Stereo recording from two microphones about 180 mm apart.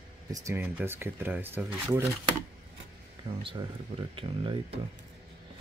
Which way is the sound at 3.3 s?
30° right (ahead or behind).